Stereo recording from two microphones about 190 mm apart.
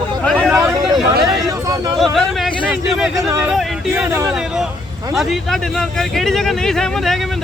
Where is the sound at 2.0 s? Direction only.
Centre (ahead or behind).